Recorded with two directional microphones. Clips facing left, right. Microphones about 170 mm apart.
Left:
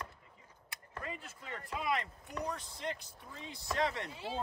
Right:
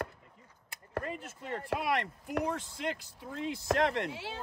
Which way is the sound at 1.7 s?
70° right (ahead or behind).